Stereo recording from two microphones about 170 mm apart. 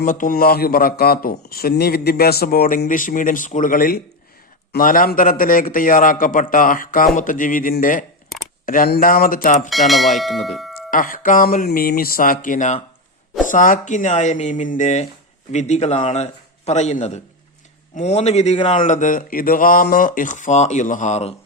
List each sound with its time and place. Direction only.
0.0 s a man's voice: 50° left (ahead or behind)
9.6 s speech: centre (ahead or behind)
10.9 s a man's voice: 55° left (ahead or behind)